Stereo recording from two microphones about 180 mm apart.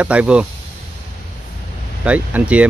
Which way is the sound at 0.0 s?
5° right (ahead or behind).